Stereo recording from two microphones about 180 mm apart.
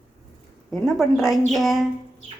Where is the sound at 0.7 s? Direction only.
Centre (ahead or behind).